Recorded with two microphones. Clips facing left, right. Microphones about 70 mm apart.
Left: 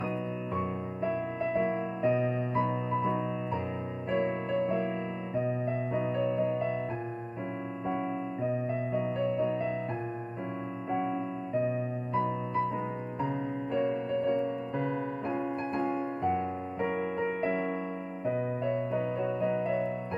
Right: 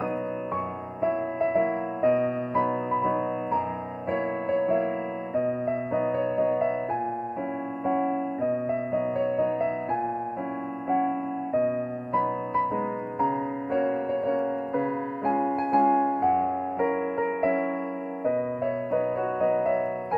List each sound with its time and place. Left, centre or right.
1.0 s music: right
7.8 s music: right
8.4 s music: right
10.9 s music: right
12.1 s music: right